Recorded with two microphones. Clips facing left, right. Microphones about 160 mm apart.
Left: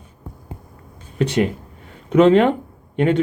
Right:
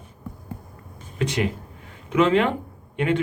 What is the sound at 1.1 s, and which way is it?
Speech, 35° left (ahead or behind).